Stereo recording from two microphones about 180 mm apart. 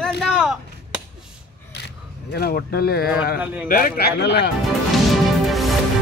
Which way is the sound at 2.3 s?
60° left (ahead or behind).